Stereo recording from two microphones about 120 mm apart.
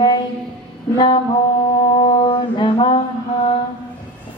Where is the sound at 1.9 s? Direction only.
45° left (ahead or behind).